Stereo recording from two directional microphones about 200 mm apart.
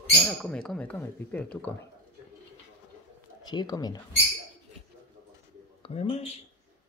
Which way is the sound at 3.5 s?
20° left (ahead or behind).